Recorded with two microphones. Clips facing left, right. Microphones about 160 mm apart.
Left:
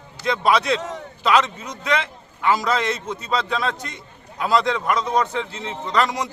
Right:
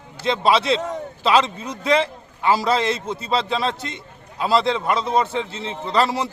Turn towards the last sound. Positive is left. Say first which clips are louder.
# right 1 dB
turn(degrees=-30)  # may be behind; listen again after turning